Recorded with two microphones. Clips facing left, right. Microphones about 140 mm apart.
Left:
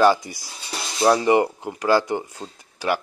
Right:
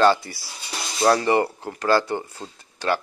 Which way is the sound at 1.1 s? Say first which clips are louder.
Left 2 dB; 15° left (ahead or behind).